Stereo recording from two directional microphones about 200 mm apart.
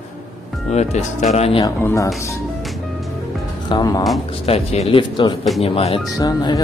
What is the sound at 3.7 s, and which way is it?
A man's voice, 20° left (ahead or behind).